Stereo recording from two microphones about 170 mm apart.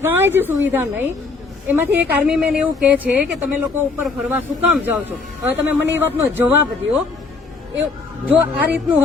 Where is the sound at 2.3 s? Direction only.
5° right (ahead or behind).